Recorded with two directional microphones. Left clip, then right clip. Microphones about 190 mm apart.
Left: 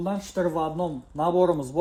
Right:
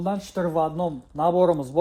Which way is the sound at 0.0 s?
45° right (ahead or behind).